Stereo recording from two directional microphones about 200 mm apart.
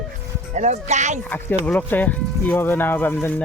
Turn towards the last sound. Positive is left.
turn(degrees=10)  # may be behind; listen again after turning